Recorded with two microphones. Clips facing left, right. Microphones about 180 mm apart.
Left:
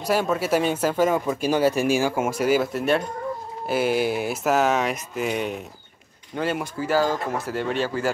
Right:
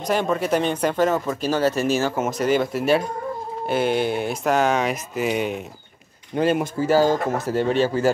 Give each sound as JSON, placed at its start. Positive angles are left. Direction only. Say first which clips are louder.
{"t": 0.0, "sound": "speech", "louder": "right 1 dB", "side_deg": 5}
{"t": 6.3, "sound": "speech", "louder": "right 6 dB", "side_deg": -20}
{"t": 7.3, "sound": "speech", "louder": "right 5 dB", "side_deg": -40}